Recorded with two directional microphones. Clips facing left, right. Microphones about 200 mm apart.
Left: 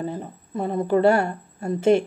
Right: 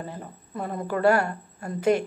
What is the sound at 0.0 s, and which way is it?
A woman's voice, 25° left (ahead or behind).